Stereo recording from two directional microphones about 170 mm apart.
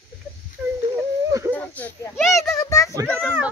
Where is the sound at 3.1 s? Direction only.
10° right (ahead or behind).